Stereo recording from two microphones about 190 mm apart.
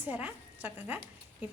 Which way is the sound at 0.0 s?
10° right (ahead or behind).